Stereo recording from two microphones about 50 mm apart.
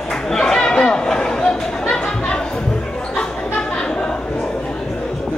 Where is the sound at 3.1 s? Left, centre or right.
Centre.